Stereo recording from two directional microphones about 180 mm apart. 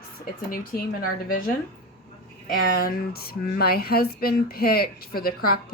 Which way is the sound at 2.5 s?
55° left (ahead or behind).